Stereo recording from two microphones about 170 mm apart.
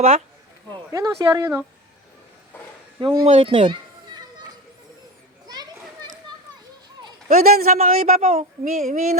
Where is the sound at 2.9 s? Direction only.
30° right (ahead or behind).